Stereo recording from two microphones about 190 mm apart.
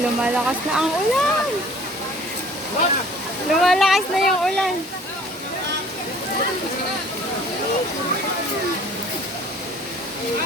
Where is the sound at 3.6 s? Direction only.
Centre (ahead or behind).